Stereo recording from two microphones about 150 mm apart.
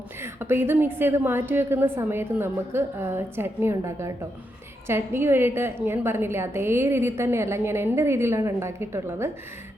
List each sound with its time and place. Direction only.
0.2 s a woman's voice: 15° right (ahead or behind)